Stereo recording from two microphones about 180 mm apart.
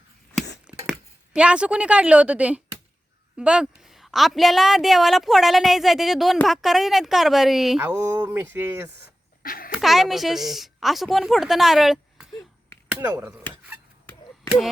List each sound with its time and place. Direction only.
0.7 s a woman's voice: 5° right (ahead or behind)
9.4 s a sound: 50° left (ahead or behind)
9.7 s a woman's voice: centre (ahead or behind)